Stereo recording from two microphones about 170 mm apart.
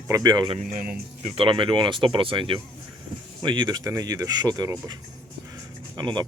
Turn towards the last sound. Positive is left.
turn(degrees=-25)  # may be behind; listen again after turning